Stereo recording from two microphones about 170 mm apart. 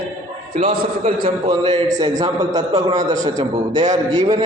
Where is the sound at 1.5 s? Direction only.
30° right (ahead or behind).